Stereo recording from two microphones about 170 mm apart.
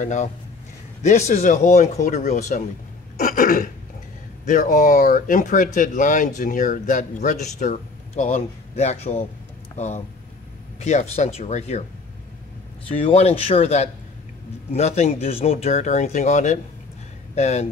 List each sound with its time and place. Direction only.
0.0 s speech: 45° left (ahead or behind)
3.2 s throat clearing: 55° left (ahead or behind)
4.5 s speech: 50° left (ahead or behind)
12.9 s speech: 35° left (ahead or behind)